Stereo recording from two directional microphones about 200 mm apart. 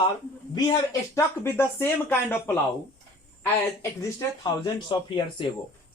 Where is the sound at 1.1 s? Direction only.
10° left (ahead or behind).